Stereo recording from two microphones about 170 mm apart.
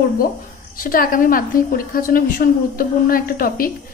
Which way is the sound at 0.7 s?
55° left (ahead or behind).